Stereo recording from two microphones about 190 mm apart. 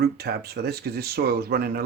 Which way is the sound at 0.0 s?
60° right (ahead or behind).